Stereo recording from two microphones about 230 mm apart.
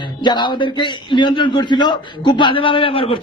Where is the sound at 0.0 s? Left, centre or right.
Centre.